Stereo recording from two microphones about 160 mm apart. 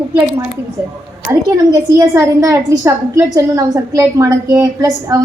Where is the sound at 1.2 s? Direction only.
25° right (ahead or behind).